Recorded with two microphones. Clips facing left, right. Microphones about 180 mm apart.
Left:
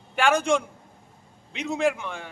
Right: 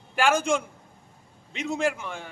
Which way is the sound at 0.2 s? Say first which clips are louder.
Left 1 dB; centre (ahead or behind).